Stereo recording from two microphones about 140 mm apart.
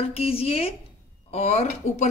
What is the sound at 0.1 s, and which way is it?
Speech, 45° left (ahead or behind).